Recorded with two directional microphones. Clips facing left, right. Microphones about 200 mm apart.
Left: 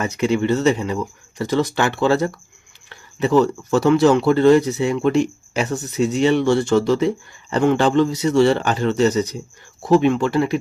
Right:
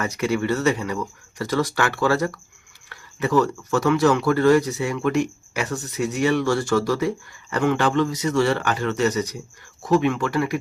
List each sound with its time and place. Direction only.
0.0 s speech: 20° left (ahead or behind)